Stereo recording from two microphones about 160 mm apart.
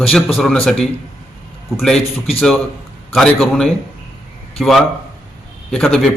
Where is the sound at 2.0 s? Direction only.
40° left (ahead or behind).